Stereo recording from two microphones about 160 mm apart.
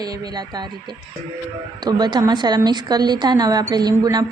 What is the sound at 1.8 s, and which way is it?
A woman's voice, 25° right (ahead or behind).